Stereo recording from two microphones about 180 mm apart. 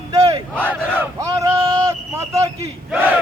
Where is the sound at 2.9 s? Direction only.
10° right (ahead or behind).